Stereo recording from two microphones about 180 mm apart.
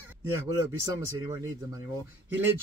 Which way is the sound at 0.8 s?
15° right (ahead or behind).